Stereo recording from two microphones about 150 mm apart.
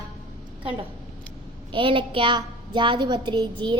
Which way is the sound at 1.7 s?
35° right (ahead or behind).